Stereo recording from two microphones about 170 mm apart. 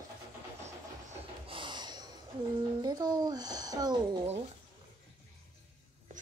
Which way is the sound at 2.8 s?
25° right (ahead or behind).